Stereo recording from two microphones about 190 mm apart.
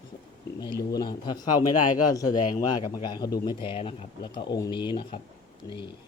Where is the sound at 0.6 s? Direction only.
20° left (ahead or behind).